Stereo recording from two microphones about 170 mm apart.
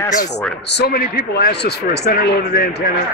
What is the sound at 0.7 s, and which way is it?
Speech, 70° left (ahead or behind).